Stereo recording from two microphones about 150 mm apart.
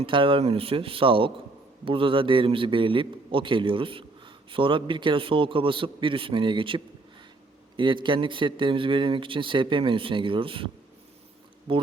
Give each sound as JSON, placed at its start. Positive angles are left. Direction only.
{"t": 0.0, "sound": "a man's voice", "side_deg": -35}
{"t": 11.7, "sound": "a man's voice", "side_deg": -35}